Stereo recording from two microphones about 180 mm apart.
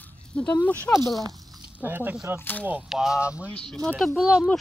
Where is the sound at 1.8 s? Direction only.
10° right (ahead or behind).